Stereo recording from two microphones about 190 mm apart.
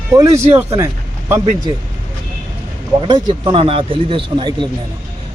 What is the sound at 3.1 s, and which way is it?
Speech, 20° right (ahead or behind).